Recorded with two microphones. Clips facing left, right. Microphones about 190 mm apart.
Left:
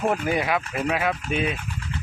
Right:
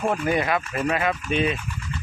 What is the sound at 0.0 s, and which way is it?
Speech, 5° left (ahead or behind).